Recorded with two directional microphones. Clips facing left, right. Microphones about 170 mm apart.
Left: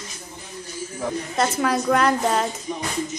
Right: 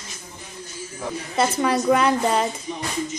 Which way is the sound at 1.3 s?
Centre (ahead or behind).